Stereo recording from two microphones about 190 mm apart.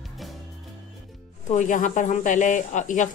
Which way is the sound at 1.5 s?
40° left (ahead or behind).